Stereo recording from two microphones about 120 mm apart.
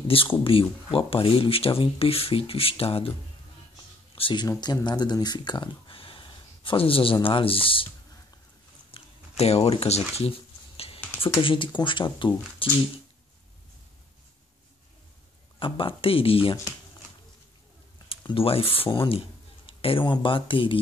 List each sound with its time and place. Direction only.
0.4 s speech: 50° left (ahead or behind)
8.9 s a sound: 55° left (ahead or behind)
9.4 s speech: 60° left (ahead or behind)
11.4 s speech: 45° left (ahead or behind)
15.6 s speech: 45° left (ahead or behind)
18.0 s speech: 50° left (ahead or behind)